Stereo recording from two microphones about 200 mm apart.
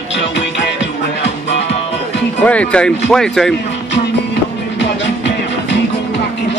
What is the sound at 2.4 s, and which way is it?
Speech, 5° left (ahead or behind).